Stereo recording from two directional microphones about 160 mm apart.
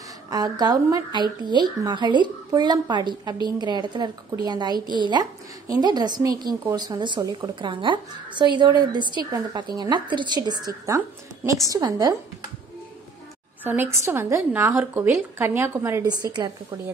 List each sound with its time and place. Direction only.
0.3 s a woman's voice: 25° right (ahead or behind)
13.7 s a woman's voice: 15° right (ahead or behind)